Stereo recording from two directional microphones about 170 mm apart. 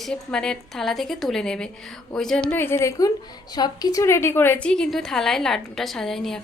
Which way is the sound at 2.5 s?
15° left (ahead or behind).